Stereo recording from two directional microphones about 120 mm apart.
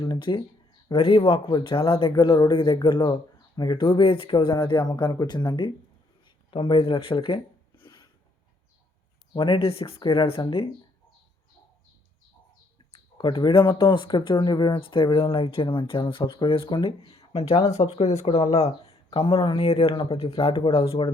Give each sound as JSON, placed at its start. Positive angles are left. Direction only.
{"t": 0.0, "sound": "speech", "side_deg": 40}
{"t": 6.2, "sound": "a sound", "side_deg": 45}
{"t": 9.3, "sound": "speech", "side_deg": 45}
{"t": 13.1, "sound": "speech", "side_deg": 40}